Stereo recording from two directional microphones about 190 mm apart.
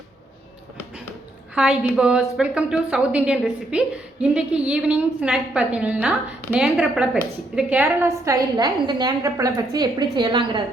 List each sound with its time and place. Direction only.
1.5 s a woman's voice: 5° right (ahead or behind); by 10.6 s 25° right (ahead or behind)